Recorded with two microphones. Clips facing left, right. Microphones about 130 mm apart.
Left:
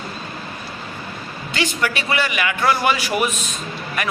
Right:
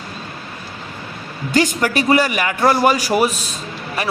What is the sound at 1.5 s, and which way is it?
A man's voice, 40° right (ahead or behind).